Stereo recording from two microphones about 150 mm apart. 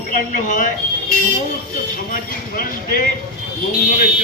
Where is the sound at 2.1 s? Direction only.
70° left (ahead or behind).